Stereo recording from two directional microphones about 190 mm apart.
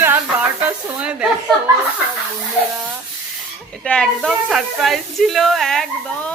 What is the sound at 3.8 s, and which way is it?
Speech, 5° left (ahead or behind).